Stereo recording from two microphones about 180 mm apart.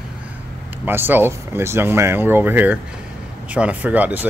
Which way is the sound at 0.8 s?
10° right (ahead or behind).